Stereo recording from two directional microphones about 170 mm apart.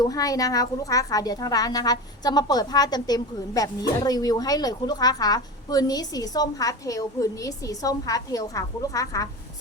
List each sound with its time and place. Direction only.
0.0 s a woman's voice: 20° left (ahead or behind)